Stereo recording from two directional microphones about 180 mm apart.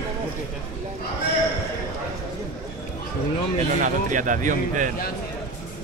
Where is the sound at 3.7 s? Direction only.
45° right (ahead or behind).